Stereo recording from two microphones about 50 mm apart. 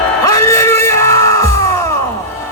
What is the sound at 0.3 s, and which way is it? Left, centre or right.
Music, left.